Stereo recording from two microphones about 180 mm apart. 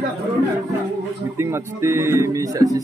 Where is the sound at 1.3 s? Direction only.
15° right (ahead or behind).